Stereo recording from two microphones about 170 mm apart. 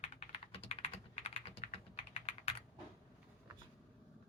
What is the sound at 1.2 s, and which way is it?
Typing, 35° left (ahead or behind).